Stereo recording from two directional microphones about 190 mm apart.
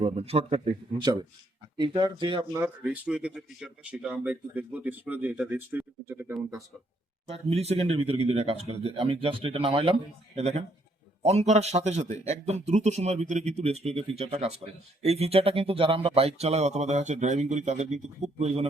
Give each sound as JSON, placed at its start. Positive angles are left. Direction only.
{"t": 0.0, "sound": "speech", "side_deg": -30}
{"t": 2.6, "sound": "speech", "side_deg": -10}
{"t": 7.3, "sound": "speech", "side_deg": -30}